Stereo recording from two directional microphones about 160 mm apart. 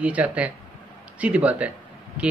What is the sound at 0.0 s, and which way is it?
Speech, 10° right (ahead or behind).